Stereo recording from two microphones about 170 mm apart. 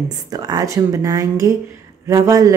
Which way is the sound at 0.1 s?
25° right (ahead or behind).